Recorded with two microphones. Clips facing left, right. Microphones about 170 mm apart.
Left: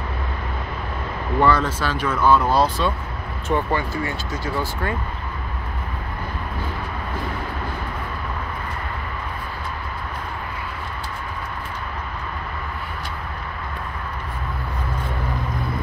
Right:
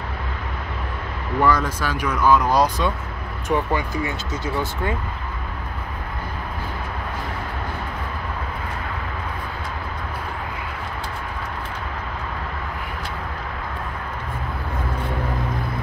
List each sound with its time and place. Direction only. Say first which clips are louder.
1.4 s speech: left 1 dB; 10° right (ahead or behind)